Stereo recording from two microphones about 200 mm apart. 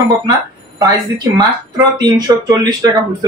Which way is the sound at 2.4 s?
20° right (ahead or behind).